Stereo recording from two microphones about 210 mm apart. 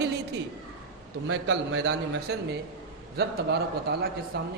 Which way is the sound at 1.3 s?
60° right (ahead or behind).